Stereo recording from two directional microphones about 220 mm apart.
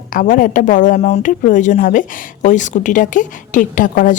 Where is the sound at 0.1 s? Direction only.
35° left (ahead or behind).